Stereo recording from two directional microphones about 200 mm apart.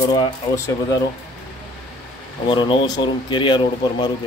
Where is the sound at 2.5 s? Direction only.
25° left (ahead or behind).